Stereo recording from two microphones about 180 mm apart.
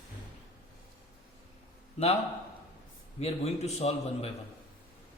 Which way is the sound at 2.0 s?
35° left (ahead or behind).